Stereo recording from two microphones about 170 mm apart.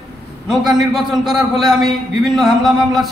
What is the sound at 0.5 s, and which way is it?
A man's voice, centre (ahead or behind).